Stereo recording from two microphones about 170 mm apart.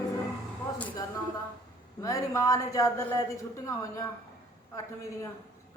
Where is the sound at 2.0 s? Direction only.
20° left (ahead or behind).